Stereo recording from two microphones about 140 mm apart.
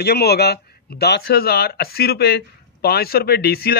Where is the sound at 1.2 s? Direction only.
90° left.